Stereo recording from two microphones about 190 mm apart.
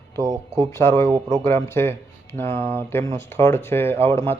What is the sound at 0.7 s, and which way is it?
Speech, 15° left (ahead or behind).